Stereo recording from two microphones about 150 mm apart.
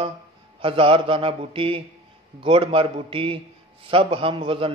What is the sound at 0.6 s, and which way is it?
A man's voice, 35° right (ahead or behind).